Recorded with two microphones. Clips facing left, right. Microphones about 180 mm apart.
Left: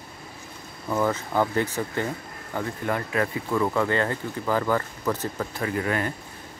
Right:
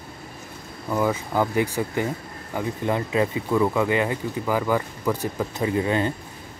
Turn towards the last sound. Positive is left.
turn(degrees=-20)  # may be behind; listen again after turning